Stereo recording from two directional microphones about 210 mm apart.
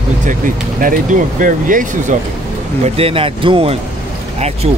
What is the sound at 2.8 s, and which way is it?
Speech, 25° right (ahead or behind).